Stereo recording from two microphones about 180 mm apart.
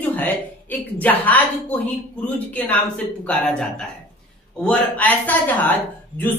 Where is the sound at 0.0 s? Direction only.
10° left (ahead or behind).